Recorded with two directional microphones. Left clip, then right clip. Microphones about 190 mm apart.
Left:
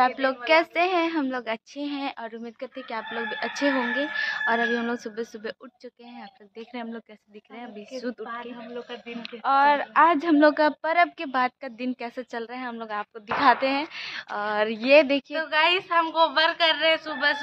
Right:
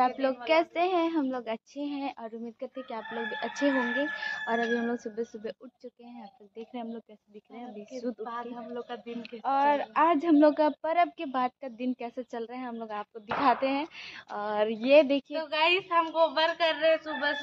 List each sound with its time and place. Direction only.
0.0 s a woman's voice: centre (ahead or behind)
6.7 s a woman's voice: 5° left (ahead or behind)
9.4 s a woman's voice: centre (ahead or behind)
15.3 s a woman's voice: 5° right (ahead or behind); by 17.4 s 20° right (ahead or behind)